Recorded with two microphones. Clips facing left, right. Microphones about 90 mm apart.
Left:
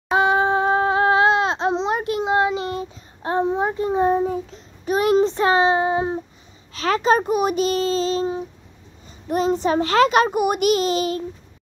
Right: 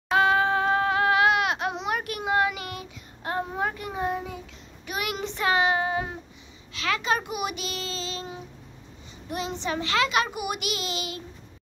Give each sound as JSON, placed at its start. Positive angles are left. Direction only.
{"t": 0.1, "sound": "crying", "side_deg": 25}
{"t": 6.7, "sound": "a child's voice", "side_deg": 40}